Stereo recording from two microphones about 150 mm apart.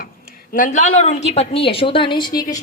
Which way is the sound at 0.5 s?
60° left (ahead or behind).